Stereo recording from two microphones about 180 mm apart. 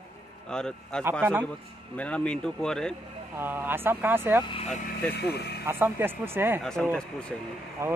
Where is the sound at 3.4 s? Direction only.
10° right (ahead or behind).